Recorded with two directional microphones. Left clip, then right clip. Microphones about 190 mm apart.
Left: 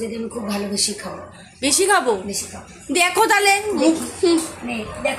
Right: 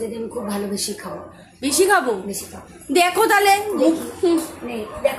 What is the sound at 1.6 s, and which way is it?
A woman's voice, 5° left (ahead or behind).